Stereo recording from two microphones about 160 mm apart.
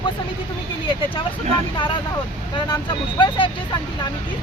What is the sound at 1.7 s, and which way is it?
Speech, 30° left (ahead or behind).